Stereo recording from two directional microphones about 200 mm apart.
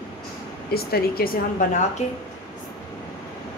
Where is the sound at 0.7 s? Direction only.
50° left (ahead or behind).